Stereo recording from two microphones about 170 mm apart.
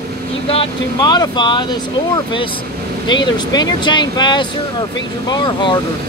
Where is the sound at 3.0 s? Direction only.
25° left (ahead or behind).